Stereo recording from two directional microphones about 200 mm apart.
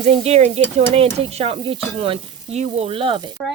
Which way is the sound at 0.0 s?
30° right (ahead or behind).